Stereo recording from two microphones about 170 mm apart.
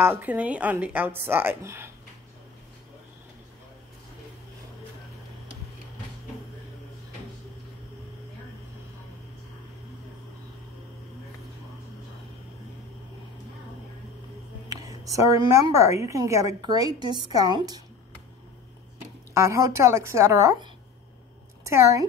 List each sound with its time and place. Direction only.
0.0 s a woman's voice: 10° right (ahead or behind)
14.9 s a woman's voice: 20° right (ahead or behind)
19.3 s a woman's voice: 15° right (ahead or behind)